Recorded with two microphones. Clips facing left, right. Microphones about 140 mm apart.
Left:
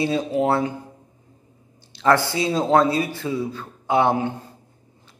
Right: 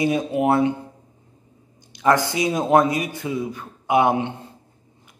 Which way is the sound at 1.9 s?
15° right (ahead or behind).